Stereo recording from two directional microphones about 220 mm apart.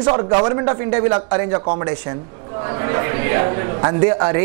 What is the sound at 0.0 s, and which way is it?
A man's voice, 25° right (ahead or behind).